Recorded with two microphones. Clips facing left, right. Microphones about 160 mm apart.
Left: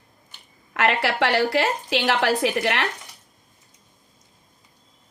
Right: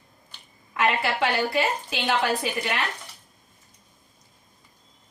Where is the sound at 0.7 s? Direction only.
85° left.